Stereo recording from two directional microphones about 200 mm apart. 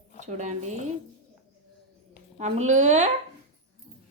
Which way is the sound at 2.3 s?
35° right (ahead or behind).